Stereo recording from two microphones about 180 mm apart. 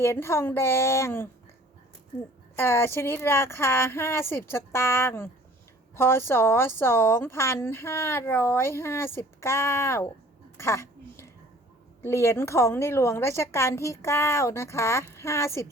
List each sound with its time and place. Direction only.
0.0 s speech: 15° left (ahead or behind)
2.6 s speech: 15° left (ahead or behind)
10.6 s a sound: 15° left (ahead or behind)
12.0 s speech: 15° left (ahead or behind)